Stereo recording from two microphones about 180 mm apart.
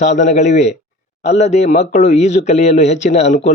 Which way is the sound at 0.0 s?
40° left (ahead or behind).